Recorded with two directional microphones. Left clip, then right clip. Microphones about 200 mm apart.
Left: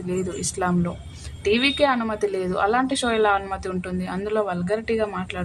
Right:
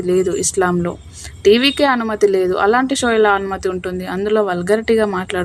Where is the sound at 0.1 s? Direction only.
25° right (ahead or behind).